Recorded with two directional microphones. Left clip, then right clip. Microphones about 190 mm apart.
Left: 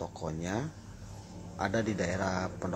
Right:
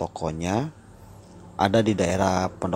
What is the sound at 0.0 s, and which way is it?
Speech, 30° right (ahead or behind).